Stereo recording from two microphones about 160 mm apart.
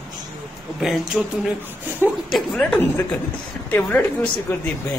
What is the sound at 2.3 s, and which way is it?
A woman's voice, 5° left (ahead or behind).